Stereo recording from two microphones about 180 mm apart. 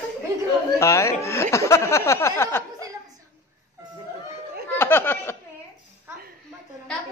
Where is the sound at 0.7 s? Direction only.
15° left (ahead or behind).